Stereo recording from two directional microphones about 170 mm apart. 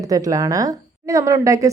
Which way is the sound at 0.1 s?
20° right (ahead or behind).